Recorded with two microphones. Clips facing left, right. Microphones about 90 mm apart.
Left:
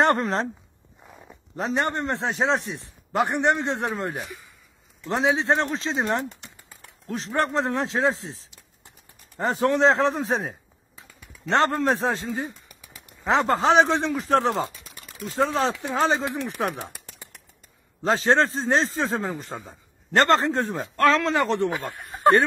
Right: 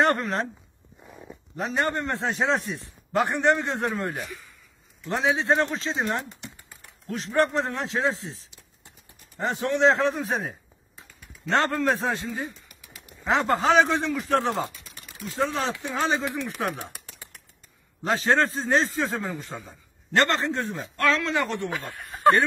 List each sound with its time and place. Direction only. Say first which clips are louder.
0.0 s speech: left 2 dB; 30° left (ahead or behind)
1.6 s a man's voice: left 1 dB; 25° left (ahead or behind)
9.4 s a man's voice: left 2 dB; 40° left (ahead or behind)
11.5 s a man's voice: left 2 dB; 25° left (ahead or behind)
18.0 s a man's voice: left 2 dB; 30° left (ahead or behind)